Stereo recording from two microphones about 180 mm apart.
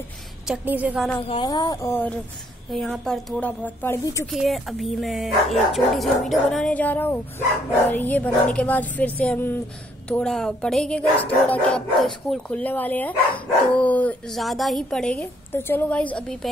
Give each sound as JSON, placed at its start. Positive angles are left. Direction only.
{"t": 0.5, "sound": "speech", "side_deg": -10}
{"t": 1.2, "sound": "speech", "side_deg": 30}
{"t": 2.7, "sound": "a woman's voice", "side_deg": 0}
{"t": 4.3, "sound": "a woman's voice", "side_deg": 0}